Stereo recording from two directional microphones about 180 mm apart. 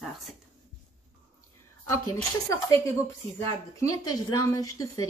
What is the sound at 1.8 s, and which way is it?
Speech, 15° left (ahead or behind).